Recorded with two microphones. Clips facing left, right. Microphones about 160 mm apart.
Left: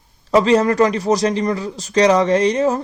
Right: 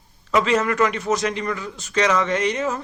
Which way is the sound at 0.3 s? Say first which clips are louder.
Left 6 dB; 35° left (ahead or behind).